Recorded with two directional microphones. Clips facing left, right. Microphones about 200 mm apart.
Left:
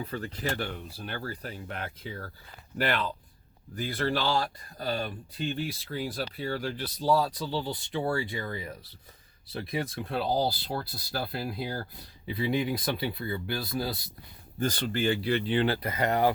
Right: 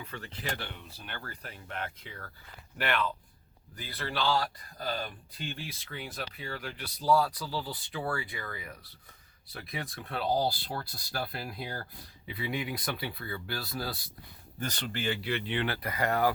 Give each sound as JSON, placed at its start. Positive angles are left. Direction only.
{"t": 0.0, "sound": "speech", "side_deg": 40}
{"t": 4.4, "sound": "speech", "side_deg": 25}
{"t": 6.8, "sound": "speech", "side_deg": 25}
{"t": 14.6, "sound": "speech", "side_deg": 35}